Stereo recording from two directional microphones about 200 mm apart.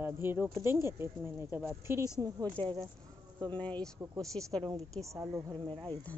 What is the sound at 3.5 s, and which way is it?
Speech, 5° left (ahead or behind).